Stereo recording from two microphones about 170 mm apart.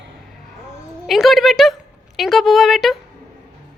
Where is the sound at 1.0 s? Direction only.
Centre (ahead or behind).